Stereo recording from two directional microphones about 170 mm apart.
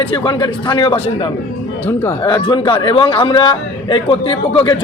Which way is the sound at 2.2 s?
25° left (ahead or behind).